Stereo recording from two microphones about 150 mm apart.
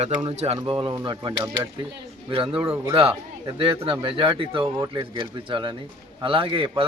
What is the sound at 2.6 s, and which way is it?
Speech, 15° right (ahead or behind).